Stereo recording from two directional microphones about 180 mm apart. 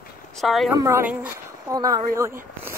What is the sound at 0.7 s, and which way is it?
Speech, 15° right (ahead or behind).